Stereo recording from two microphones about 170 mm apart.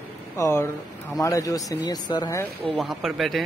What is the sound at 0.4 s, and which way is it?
Speech, 15° left (ahead or behind).